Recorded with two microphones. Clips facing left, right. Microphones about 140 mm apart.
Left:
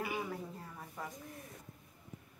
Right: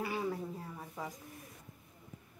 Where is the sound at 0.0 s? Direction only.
15° left (ahead or behind).